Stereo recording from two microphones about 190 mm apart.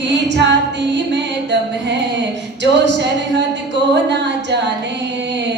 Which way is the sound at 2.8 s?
65° right (ahead or behind).